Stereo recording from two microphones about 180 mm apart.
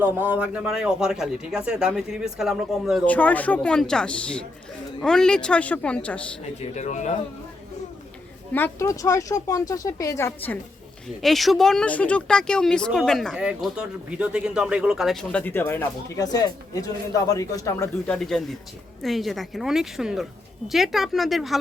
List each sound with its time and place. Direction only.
0.0 s speech: 10° right (ahead or behind)
3.1 s speech: 10° left (ahead or behind)
6.6 s speech: 40° left (ahead or behind)
8.5 s speech: 15° left (ahead or behind)
11.2 s speech: centre (ahead or behind); by 17.8 s 20° left (ahead or behind)
18.1 s speech: 5° left (ahead or behind)